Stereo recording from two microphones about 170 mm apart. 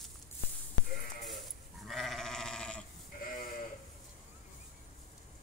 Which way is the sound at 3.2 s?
55° left (ahead or behind).